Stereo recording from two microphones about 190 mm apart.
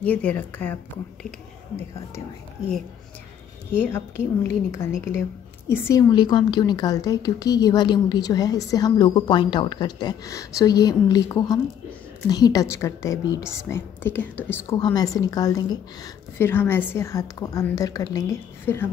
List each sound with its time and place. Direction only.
0.0 s a woman's voice: 10° left (ahead or behind)
3.8 s a woman's voice: 10° left (ahead or behind)